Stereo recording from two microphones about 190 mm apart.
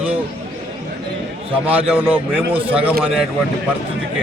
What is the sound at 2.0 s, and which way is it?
Speech, 10° right (ahead or behind).